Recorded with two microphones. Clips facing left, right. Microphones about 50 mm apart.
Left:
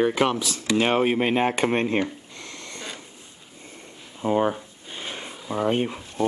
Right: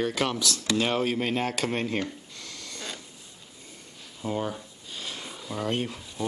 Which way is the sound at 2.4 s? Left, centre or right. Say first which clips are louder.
Left 4 dB; left.